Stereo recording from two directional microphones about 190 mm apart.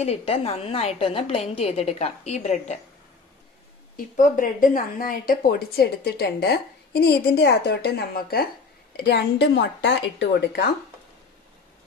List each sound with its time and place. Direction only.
0.0 s a woman's voice: 35° left (ahead or behind)
3.9 s speech: 45° left (ahead or behind); by 10.7 s 65° left (ahead or behind)